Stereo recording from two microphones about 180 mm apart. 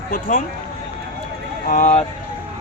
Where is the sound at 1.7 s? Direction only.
40° left (ahead or behind).